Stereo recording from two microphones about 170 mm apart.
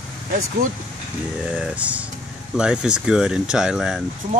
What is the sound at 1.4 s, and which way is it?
Speech, 5° right (ahead or behind).